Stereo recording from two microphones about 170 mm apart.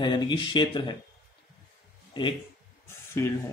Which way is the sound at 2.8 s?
15° left (ahead or behind).